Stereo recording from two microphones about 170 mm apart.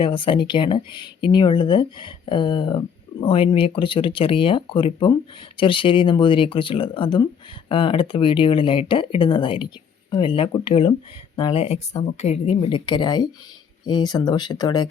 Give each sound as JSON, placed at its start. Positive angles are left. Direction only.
{"t": 0.0, "sound": "a woman's voice", "side_deg": 30}